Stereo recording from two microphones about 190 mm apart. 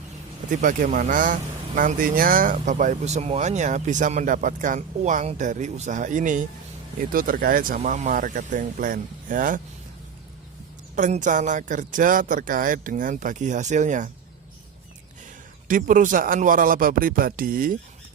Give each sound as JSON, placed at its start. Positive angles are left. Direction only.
{"t": 0.5, "sound": "speech", "side_deg": -45}
{"t": 10.9, "sound": "speech", "side_deg": -40}
{"t": 15.6, "sound": "speech", "side_deg": -45}